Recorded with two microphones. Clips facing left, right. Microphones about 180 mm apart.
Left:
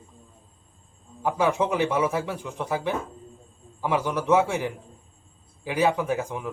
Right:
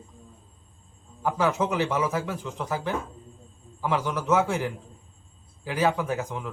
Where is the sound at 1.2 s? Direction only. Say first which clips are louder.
Left 2 dB; 15° left (ahead or behind).